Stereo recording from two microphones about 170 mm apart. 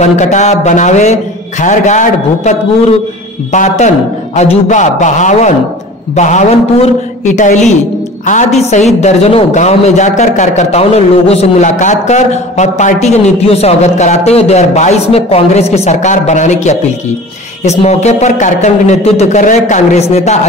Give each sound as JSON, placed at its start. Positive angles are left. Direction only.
{"t": 0.0, "sound": "a man's voice", "side_deg": 45}
{"t": 3.5, "sound": "a man's voice", "side_deg": 45}